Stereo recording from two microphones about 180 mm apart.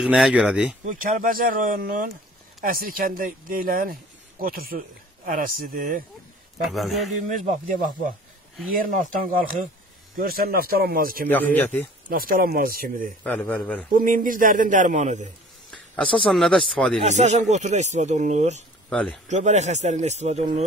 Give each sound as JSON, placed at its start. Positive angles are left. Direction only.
{"t": 0.0, "sound": "speech", "side_deg": -5}
{"t": 0.8, "sound": "speech", "side_deg": -50}
{"t": 6.6, "sound": "a man's voice", "side_deg": 0}
{"t": 7.2, "sound": "speech", "side_deg": -45}
{"t": 8.7, "sound": "speech", "side_deg": -50}
{"t": 11.2, "sound": "speech", "side_deg": 10}
{"t": 12.1, "sound": "speech", "side_deg": -55}
{"t": 13.2, "sound": "speech", "side_deg": 5}
{"t": 13.9, "sound": "speech", "side_deg": -50}
{"t": 15.7, "sound": "speech", "side_deg": 5}
{"t": 17.0, "sound": "speech", "side_deg": -40}
{"t": 18.9, "sound": "speech", "side_deg": 5}
{"t": 19.2, "sound": "speech", "side_deg": -40}